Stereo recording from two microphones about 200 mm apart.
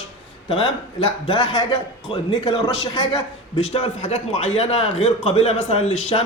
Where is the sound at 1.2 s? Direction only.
25° left (ahead or behind).